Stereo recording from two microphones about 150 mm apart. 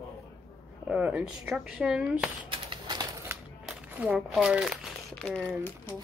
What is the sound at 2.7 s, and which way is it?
Bird, 30° right (ahead or behind).